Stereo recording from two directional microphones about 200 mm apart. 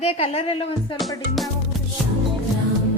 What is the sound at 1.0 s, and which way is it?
Speech, centre (ahead or behind).